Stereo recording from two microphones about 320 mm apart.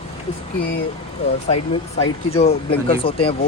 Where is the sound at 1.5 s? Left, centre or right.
Centre.